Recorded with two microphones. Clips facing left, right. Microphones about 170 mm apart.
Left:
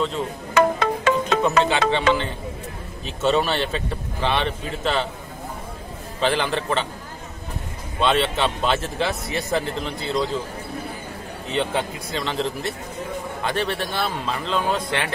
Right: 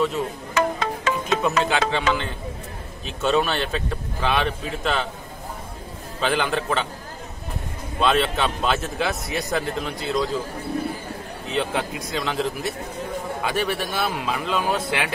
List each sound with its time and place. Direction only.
0.6 s music: 60° left (ahead or behind)
1.6 s speech: centre (ahead or behind)
6.2 s speech: centre (ahead or behind)
8.0 s speech: centre (ahead or behind)
11.4 s a man's voice: centre (ahead or behind)